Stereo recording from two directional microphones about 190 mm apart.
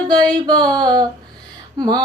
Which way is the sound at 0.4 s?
20° right (ahead or behind).